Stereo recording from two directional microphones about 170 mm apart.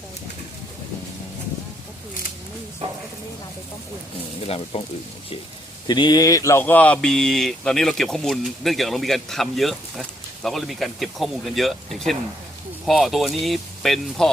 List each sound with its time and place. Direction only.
4.4 s speech: 35° left (ahead or behind)
5.9 s speech: 25° left (ahead or behind); by 14.3 s centre (ahead or behind)